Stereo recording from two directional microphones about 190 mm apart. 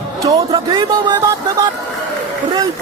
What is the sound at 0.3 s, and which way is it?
Speech, 25° right (ahead or behind).